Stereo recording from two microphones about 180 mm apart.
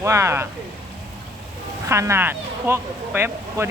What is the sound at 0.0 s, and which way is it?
Speech, 15° right (ahead or behind).